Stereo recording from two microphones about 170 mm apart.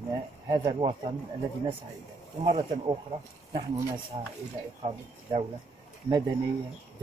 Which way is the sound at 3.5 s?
15° right (ahead or behind).